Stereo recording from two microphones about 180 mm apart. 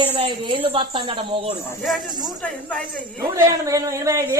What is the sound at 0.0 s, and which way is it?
Speech, 30° right (ahead or behind).